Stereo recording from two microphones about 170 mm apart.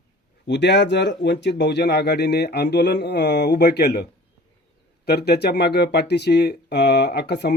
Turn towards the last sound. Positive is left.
turn(degrees=75)  # may be behind; listen again after turning